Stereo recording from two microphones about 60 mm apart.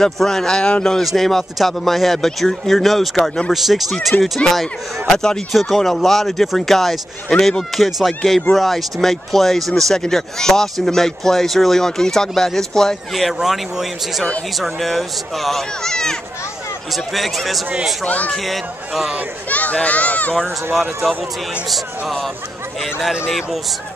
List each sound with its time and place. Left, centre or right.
0.0 s a man's voice: centre
7.7 s speech: centre
18.0 s a child's voice: left
18.3 s speech: centre
19.5 s a child's voice: left
20.7 s speech: centre